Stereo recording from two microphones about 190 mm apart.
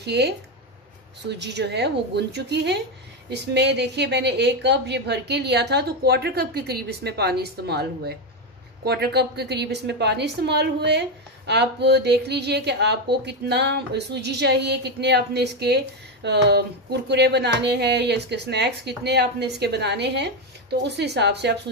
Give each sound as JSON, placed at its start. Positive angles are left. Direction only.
{"t": 0.0, "sound": "speech", "side_deg": -60}
{"t": 1.3, "sound": "a woman's voice", "side_deg": -65}